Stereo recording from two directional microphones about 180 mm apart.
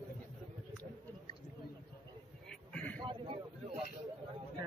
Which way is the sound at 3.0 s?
30° right (ahead or behind).